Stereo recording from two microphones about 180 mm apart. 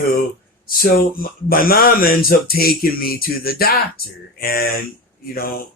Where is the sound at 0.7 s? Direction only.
55° left (ahead or behind).